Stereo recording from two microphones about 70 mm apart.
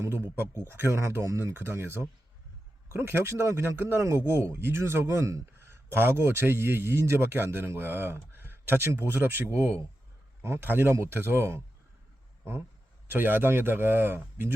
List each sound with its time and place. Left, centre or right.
0.0 s a man's voice: right
13.1 s a man's voice: right